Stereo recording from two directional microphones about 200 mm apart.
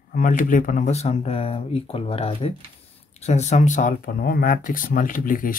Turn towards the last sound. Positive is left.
turn(degrees=45)  # may be behind; listen again after turning